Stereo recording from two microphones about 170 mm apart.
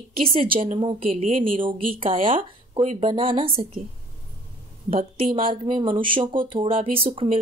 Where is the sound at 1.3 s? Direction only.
50° right (ahead or behind).